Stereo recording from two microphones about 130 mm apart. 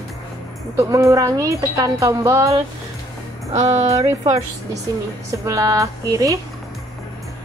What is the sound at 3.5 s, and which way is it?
Music, 65° right (ahead or behind).